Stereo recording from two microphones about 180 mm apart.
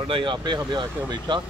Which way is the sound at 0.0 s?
30° right (ahead or behind).